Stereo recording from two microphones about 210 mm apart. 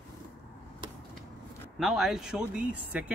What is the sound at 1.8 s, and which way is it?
Speech, centre (ahead or behind).